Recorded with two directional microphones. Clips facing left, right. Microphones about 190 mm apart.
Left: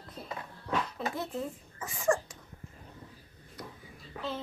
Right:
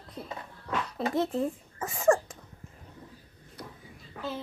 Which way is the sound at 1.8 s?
45° right (ahead or behind).